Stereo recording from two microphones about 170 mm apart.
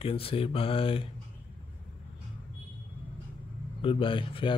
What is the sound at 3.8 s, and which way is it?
Speech, 30° left (ahead or behind).